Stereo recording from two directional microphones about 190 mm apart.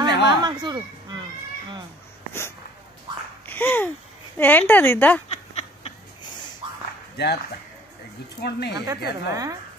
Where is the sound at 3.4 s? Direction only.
10° left (ahead or behind).